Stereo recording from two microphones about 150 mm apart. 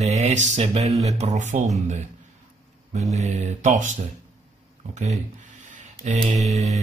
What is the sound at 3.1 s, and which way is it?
Speech, 50° right (ahead or behind).